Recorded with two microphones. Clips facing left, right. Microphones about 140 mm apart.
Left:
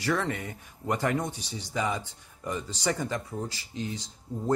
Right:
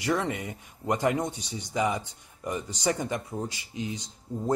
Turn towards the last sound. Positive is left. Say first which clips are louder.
# right 1 dB
turn(degrees=-15)  # may be behind; listen again after turning